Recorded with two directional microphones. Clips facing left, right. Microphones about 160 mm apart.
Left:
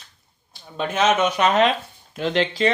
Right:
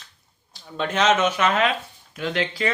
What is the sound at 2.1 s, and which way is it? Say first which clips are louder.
Speech: left 4 dB; 25° left (ahead or behind).